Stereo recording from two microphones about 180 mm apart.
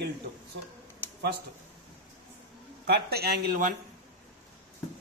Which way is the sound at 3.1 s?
60° right (ahead or behind).